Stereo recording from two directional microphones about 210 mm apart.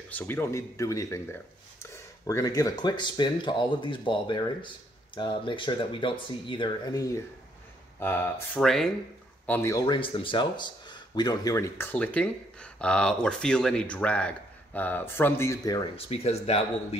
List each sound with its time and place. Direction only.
0.1 s speech: 10° left (ahead or behind)
9.5 s speech: 10° left (ahead or behind); by 16.6 s 30° left (ahead or behind)